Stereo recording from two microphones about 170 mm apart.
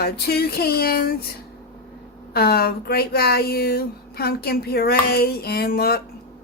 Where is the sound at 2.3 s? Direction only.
65° left (ahead or behind).